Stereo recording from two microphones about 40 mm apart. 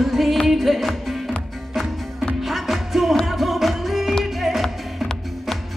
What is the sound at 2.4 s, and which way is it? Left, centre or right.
Music, centre.